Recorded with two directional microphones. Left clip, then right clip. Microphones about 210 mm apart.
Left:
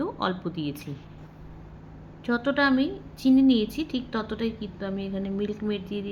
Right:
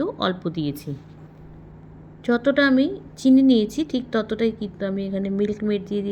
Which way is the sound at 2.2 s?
15° right (ahead or behind).